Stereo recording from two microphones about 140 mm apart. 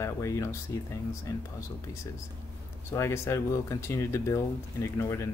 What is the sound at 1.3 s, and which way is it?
Speech, 25° left (ahead or behind).